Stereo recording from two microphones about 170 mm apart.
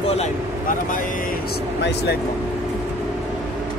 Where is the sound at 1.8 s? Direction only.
85° left.